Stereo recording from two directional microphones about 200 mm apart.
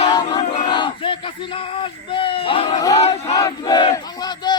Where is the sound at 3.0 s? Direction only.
35° left (ahead or behind).